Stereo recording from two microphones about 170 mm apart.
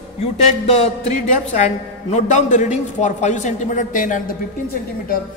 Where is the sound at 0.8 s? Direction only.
40° left (ahead or behind).